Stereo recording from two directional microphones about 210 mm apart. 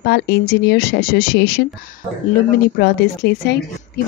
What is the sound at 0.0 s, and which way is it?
Speech, 50° left (ahead or behind).